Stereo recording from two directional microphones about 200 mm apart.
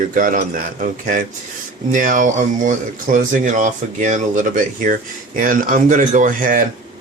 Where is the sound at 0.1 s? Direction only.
40° right (ahead or behind).